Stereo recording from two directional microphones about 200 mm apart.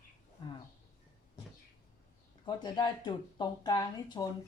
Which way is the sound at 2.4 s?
20° left (ahead or behind).